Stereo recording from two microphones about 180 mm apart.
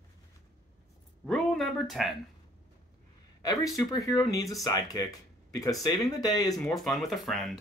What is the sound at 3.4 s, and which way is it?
Speech, 20° left (ahead or behind).